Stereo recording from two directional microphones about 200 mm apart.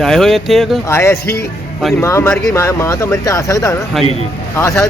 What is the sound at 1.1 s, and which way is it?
Speech, 50° left (ahead or behind).